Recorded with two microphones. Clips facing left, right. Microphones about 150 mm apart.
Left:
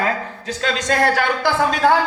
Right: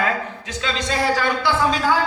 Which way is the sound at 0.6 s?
50° left (ahead or behind).